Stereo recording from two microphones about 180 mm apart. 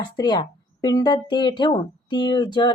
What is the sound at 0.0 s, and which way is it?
A woman's voice, 25° left (ahead or behind).